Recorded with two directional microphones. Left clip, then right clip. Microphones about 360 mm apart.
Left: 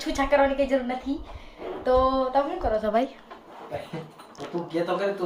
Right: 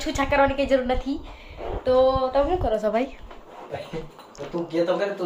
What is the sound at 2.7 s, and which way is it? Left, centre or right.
Speech, right.